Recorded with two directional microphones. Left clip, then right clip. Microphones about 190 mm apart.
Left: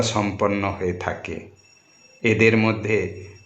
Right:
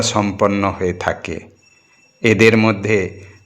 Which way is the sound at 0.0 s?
20° right (ahead or behind).